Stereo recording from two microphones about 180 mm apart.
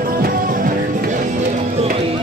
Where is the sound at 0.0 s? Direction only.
50° right (ahead or behind).